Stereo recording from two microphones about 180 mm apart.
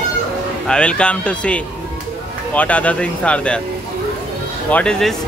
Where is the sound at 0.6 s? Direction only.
5° left (ahead or behind).